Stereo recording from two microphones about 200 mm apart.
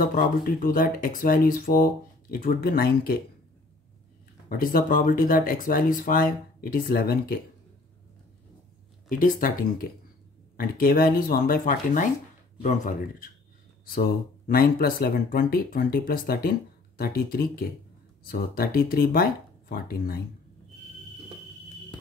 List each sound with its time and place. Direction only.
0.0 s speech: 45° left (ahead or behind)
4.5 s speech: 45° left (ahead or behind)
9.1 s speech: 40° left (ahead or behind)